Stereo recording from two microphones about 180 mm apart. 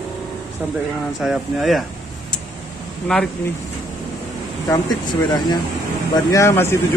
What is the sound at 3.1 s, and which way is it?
Speech, 5° left (ahead or behind).